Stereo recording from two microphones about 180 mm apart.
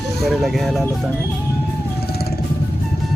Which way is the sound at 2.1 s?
60° left (ahead or behind).